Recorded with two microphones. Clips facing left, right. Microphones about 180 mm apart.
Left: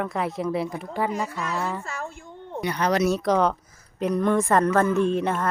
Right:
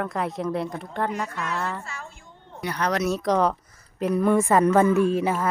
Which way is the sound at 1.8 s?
45° left (ahead or behind).